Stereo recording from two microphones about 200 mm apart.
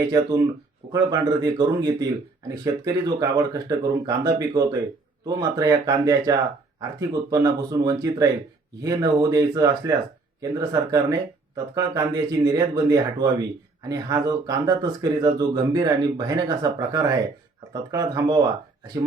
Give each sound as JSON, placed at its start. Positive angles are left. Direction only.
{"t": 0.0, "sound": "speech", "side_deg": -20}